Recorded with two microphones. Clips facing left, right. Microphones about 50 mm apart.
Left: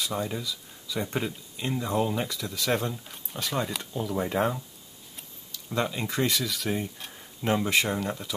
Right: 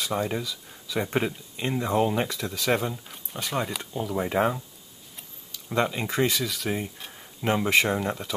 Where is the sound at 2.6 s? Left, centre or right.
Centre.